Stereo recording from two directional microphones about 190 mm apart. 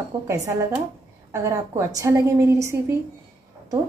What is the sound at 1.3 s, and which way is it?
A woman's voice, 15° right (ahead or behind).